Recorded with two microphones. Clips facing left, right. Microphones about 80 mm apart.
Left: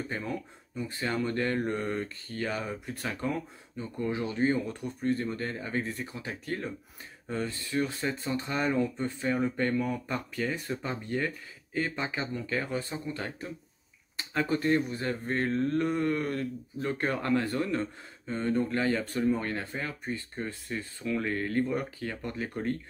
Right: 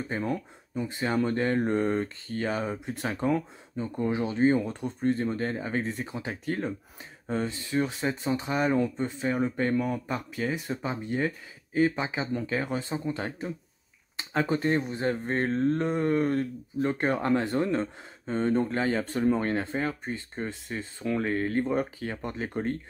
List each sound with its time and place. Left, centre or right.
0.7 s speech: centre